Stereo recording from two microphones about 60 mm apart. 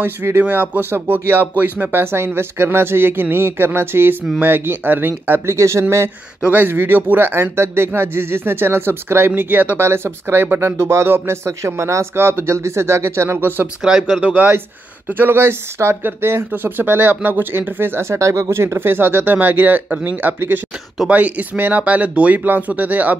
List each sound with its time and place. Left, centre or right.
0.0 s speech: right
5.6 s speech: right
6.5 s speech: right
13.8 s speech: centre
14.2 s speech: right
18.2 s speech: right